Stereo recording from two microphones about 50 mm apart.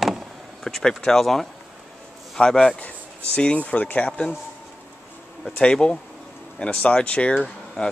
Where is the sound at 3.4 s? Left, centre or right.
Left.